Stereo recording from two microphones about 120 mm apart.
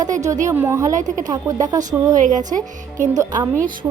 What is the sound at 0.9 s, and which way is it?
Speech, 90° right.